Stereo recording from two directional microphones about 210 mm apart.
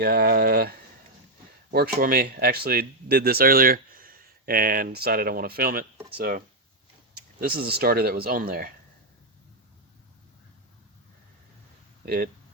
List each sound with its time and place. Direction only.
0.0 s speech: 45° right (ahead or behind)
1.7 s speech: 45° right (ahead or behind)
12.0 s speech: 45° right (ahead or behind)